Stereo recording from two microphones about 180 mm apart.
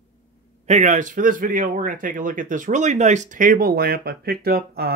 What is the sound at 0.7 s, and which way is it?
Speech, 40° right (ahead or behind).